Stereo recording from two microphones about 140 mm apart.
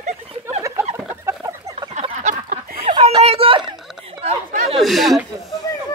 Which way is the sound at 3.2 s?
45° right (ahead or behind).